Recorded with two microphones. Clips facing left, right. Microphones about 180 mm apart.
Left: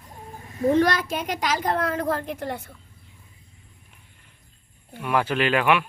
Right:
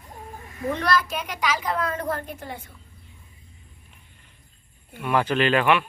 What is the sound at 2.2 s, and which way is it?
Speech, 80° left.